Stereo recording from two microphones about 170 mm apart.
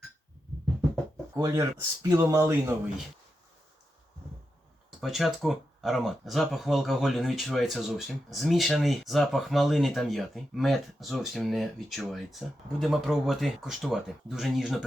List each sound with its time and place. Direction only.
1.4 s speech: 20° right (ahead or behind)
4.9 s speech: centre (ahead or behind)